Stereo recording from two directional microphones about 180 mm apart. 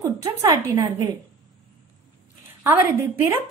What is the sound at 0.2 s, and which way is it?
Speech, 20° right (ahead or behind).